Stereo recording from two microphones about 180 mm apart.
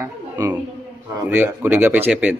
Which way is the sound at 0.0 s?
15° right (ahead or behind).